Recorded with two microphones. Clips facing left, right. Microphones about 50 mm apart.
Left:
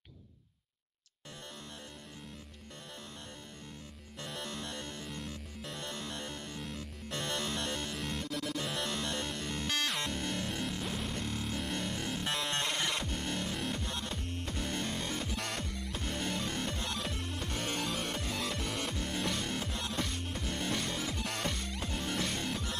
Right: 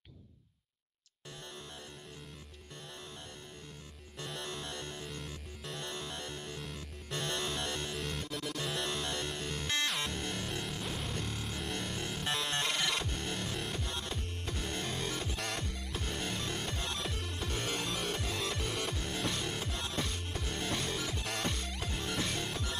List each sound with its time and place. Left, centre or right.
4.2 s music: centre
4.5 s music: centre
5.0 s music: centre
5.9 s music: centre
17.6 s music: centre
17.8 s music: centre